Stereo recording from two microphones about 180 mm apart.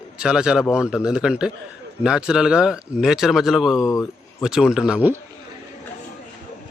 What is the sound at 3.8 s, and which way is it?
Speech, 20° left (ahead or behind).